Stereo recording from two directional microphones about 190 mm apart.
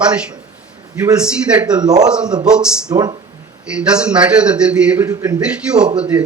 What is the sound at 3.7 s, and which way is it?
A man's voice, 5° right (ahead or behind).